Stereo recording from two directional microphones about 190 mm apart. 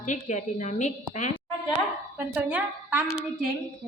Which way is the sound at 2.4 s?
10° right (ahead or behind).